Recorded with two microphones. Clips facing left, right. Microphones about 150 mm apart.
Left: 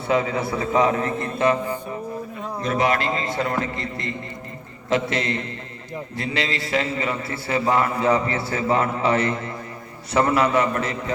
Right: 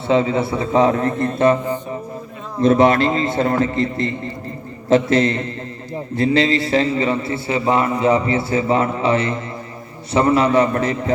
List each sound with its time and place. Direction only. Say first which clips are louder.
0.1 s a man's voice: right 5 dB; 25° right (ahead or behind)
2.6 s a man's voice: right 9 dB; 30° right (ahead or behind)